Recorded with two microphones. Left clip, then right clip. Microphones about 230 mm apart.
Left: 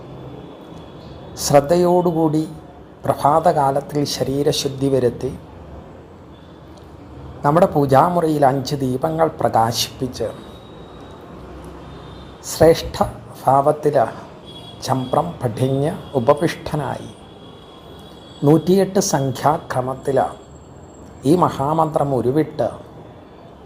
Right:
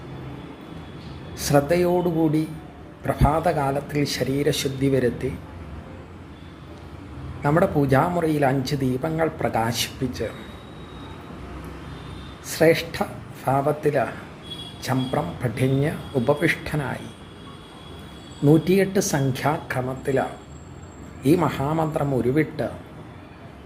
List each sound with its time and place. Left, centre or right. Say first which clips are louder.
1.4 s speech: left 6 dB; centre
7.6 s speech: left 5 dB; centre
7.9 s speech: left 8 dB; centre
13.0 s speech: left 8 dB; centre
18.4 s speech: left 4 dB; centre
21.2 s speech: left 5 dB; centre